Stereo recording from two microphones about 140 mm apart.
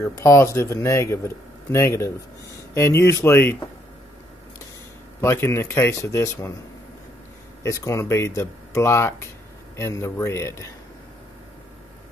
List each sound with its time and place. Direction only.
0.0 s speech: 20° left (ahead or behind)
5.2 s speech: 20° left (ahead or behind)
7.6 s speech: 20° left (ahead or behind)